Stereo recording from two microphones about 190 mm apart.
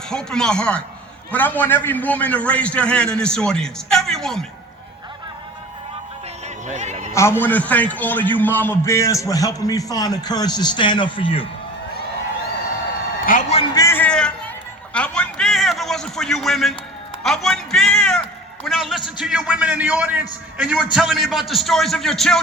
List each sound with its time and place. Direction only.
0.1 s a man's voice: 5° left (ahead or behind)
6.7 s a man's voice: 35° right (ahead or behind)
7.1 s a man's voice: 15° left (ahead or behind)
13.2 s a sound: 45° left (ahead or behind)
13.7 s a sound: 15° left (ahead or behind)
17.2 s music: centre (ahead or behind)
19.2 s a man's voice: 5° right (ahead or behind)